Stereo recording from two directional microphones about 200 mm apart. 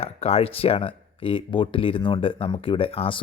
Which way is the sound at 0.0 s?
30° left (ahead or behind).